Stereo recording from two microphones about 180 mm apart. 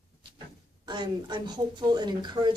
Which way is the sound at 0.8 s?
25° right (ahead or behind).